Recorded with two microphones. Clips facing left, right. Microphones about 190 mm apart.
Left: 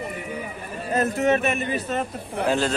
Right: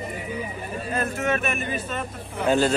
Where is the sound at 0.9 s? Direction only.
35° left (ahead or behind).